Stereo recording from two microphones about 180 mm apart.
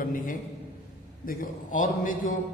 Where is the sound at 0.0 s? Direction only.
50° left (ahead or behind).